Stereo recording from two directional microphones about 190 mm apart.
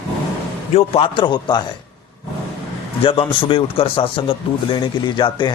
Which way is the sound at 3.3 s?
25° left (ahead or behind).